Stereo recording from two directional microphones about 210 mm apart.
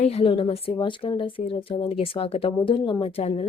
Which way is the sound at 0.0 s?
30° left (ahead or behind).